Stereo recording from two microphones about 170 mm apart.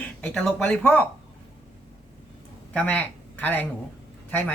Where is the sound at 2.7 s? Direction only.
10° left (ahead or behind).